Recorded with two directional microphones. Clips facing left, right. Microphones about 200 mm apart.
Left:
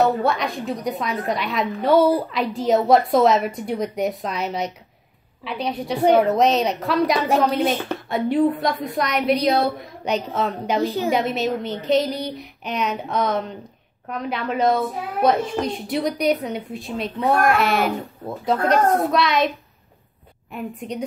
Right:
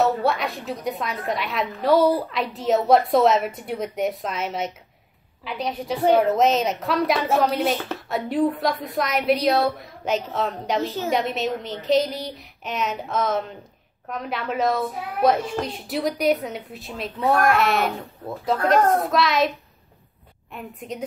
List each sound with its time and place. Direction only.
0.0 s a woman's voice: centre (ahead or behind)
5.9 s a woman's voice: 15° left (ahead or behind)
6.2 s a woman's voice: centre (ahead or behind)
20.5 s a woman's voice: centre (ahead or behind)